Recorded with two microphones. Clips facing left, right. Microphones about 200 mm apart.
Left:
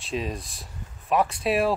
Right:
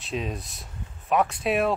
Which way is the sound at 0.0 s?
Centre (ahead or behind).